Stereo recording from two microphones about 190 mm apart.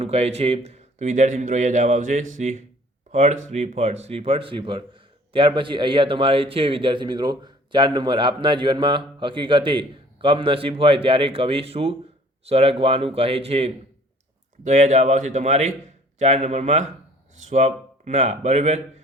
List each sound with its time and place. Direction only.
0.0 s a man's voice: 35° right (ahead or behind)